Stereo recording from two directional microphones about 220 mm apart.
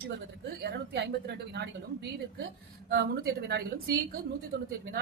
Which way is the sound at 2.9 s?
45° right (ahead or behind).